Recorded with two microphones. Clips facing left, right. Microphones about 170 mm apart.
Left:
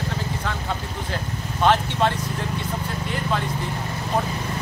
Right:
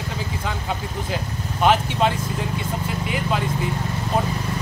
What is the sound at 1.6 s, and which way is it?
Speech, 15° right (ahead or behind).